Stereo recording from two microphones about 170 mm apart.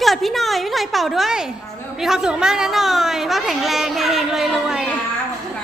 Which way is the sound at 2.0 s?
5° right (ahead or behind).